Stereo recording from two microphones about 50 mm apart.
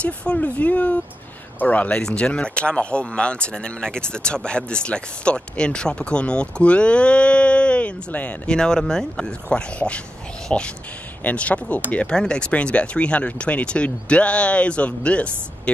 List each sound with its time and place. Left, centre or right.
0.0 s a sound: left
1.6 s speech: left
8.1 s speech: left
8.5 s speech: centre